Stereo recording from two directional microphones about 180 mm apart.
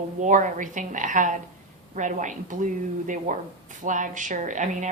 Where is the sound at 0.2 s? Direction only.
45° right (ahead or behind).